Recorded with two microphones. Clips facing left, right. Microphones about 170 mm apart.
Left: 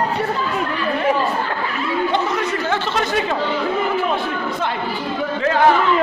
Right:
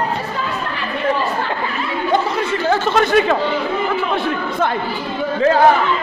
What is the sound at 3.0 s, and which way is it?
Chatter, 65° right (ahead or behind).